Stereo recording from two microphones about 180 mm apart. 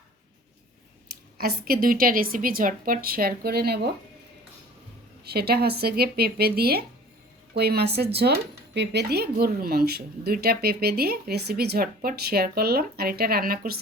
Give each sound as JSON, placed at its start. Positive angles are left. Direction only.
{"t": 1.4, "sound": "speech", "side_deg": -55}
{"t": 5.2, "sound": "speech", "side_deg": -60}